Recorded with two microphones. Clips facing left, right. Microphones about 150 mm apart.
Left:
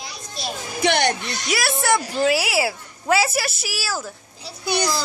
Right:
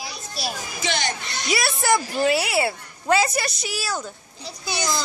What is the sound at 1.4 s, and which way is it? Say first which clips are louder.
A woman's voice: even; centre (ahead or behind).